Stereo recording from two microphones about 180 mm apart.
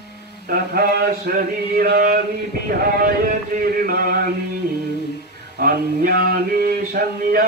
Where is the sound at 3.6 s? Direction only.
55° right (ahead or behind).